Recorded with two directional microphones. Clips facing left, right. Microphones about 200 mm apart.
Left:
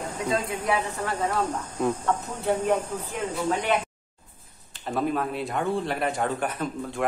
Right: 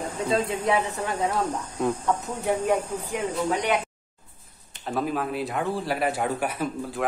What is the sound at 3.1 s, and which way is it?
Speech, 15° right (ahead or behind).